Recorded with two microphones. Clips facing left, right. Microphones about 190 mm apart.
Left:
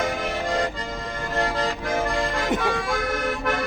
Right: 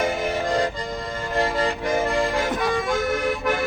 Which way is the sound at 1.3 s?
15° right (ahead or behind).